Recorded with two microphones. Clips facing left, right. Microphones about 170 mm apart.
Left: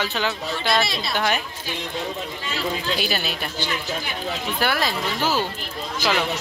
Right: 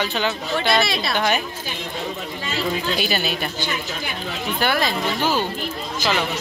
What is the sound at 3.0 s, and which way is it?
Speech, centre (ahead or behind).